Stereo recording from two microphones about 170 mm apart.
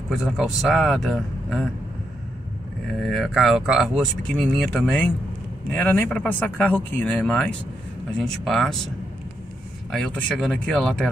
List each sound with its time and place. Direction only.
0.1 s speech: centre (ahead or behind)
2.9 s speech: centre (ahead or behind)